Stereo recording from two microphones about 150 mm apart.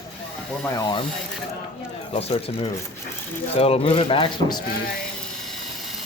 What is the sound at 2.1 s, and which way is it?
Speech, 40° left (ahead or behind).